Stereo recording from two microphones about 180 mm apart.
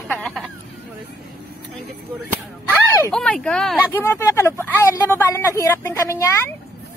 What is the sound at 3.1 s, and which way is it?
Speech, 5° left (ahead or behind).